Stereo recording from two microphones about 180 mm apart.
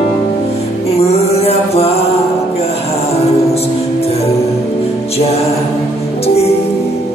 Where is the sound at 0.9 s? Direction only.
35° left (ahead or behind).